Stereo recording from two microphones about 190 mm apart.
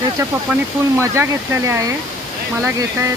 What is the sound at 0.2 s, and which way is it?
Speech, 15° right (ahead or behind).